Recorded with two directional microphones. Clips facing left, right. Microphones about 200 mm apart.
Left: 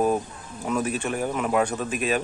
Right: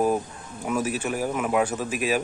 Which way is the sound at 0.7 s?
5° right (ahead or behind).